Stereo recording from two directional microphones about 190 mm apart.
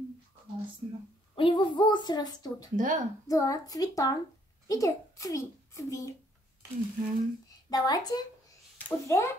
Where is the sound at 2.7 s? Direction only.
45° right (ahead or behind).